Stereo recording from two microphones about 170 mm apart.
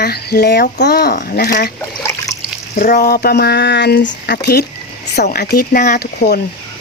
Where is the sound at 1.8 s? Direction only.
20° left (ahead or behind).